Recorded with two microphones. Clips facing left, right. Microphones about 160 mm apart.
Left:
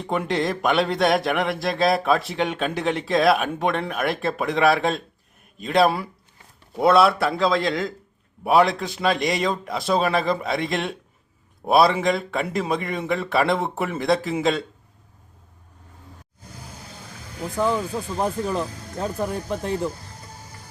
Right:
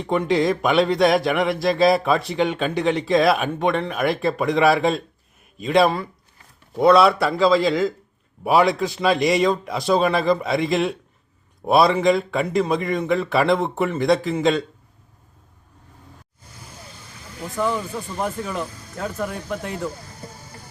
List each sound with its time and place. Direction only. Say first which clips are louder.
0.0 s a man's voice: right 4 dB; centre (ahead or behind)
17.6 s a man's voice: left 1 dB; centre (ahead or behind)
18.2 s speech: left 2 dB; 35° left (ahead or behind)